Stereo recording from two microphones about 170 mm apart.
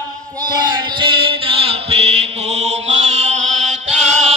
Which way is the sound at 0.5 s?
30° right (ahead or behind).